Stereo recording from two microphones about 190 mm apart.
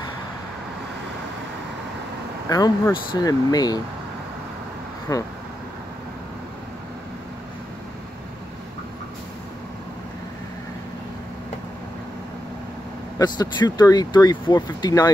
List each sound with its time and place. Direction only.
2.5 s speech: 20° left (ahead or behind)
5.1 s speech: 15° left (ahead or behind)
13.2 s speech: 20° left (ahead or behind)